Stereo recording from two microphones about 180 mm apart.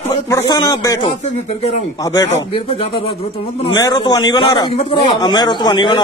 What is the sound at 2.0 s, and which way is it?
Speech, 20° left (ahead or behind).